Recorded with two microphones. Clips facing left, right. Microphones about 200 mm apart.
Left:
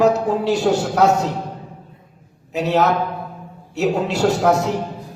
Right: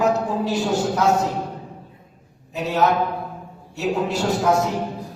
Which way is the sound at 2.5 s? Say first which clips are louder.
Left 3 dB; 70° left (ahead or behind).